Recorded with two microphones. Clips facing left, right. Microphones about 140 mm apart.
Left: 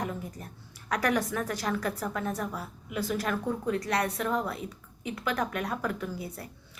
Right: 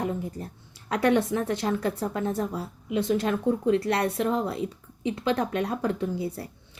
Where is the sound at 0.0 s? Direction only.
30° right (ahead or behind).